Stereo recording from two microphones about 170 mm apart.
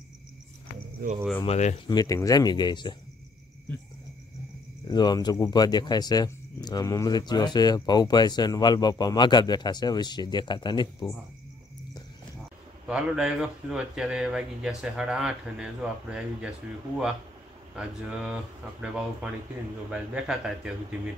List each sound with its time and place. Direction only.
1.0 s speech: 60° right (ahead or behind)
1.4 s speech: 40° left (ahead or behind)
1.9 s speech: 20° left (ahead or behind)
4.8 s speech: 25° left (ahead or behind)
12.8 s speech: 5° right (ahead or behind)
17.7 s speech: 5° right (ahead or behind)